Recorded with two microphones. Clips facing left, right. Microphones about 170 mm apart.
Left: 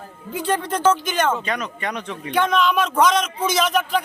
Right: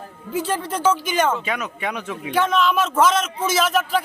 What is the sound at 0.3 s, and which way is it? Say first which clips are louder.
A man's voice: left 1 dB; 5° right (ahead or behind).